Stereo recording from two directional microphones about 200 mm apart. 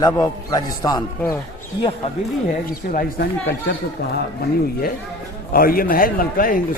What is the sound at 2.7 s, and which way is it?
Speech, 50° left (ahead or behind).